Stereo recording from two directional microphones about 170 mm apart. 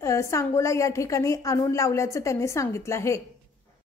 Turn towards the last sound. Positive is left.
turn(degrees=15)  # may be behind; listen again after turning